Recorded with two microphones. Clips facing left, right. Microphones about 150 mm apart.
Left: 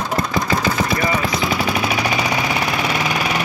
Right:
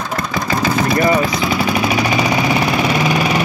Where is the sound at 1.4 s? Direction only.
5° right (ahead or behind).